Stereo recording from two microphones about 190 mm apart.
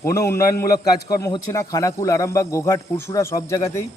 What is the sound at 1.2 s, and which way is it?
A man's voice, 15° left (ahead or behind).